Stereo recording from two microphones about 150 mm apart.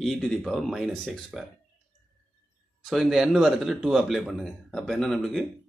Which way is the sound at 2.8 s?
Centre (ahead or behind).